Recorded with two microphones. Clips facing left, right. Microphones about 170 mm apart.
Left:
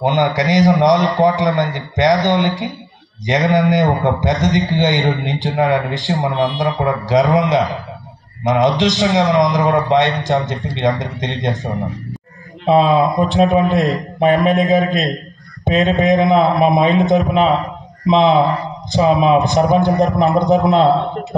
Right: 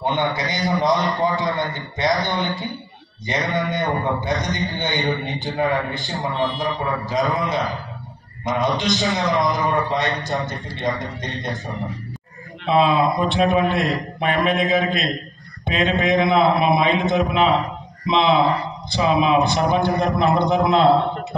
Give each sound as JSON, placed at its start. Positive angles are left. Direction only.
{"t": 0.0, "sound": "a man's voice", "side_deg": 90}
{"t": 12.6, "sound": "a man's voice", "side_deg": 40}